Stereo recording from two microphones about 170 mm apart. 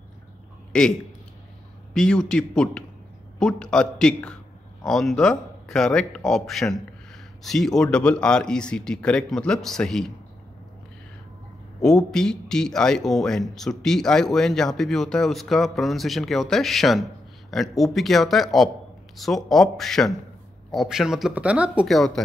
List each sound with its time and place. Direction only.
2.0 s speech: 5° left (ahead or behind)
11.8 s speech: 5° left (ahead or behind)